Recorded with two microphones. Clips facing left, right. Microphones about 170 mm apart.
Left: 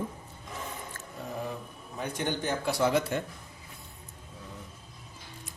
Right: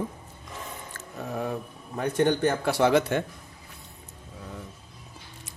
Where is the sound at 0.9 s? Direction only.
70° right (ahead or behind).